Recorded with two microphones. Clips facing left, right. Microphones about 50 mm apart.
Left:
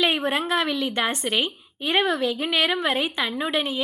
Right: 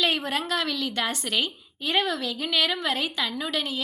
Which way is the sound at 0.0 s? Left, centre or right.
Left.